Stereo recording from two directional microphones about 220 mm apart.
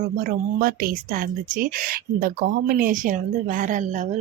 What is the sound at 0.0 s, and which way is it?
Speech, 35° right (ahead or behind).